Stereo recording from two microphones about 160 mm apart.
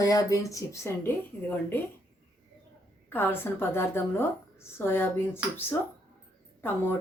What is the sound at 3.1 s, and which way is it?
A woman's voice, 15° left (ahead or behind).